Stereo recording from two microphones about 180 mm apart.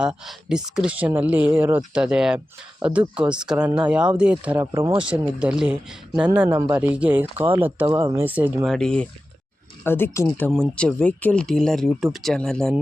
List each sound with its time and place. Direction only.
0.0 s speech: 5° right (ahead or behind)
8.7 s speech: 5° left (ahead or behind)